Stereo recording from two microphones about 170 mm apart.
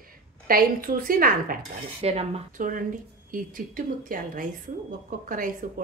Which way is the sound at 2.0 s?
35° right (ahead or behind).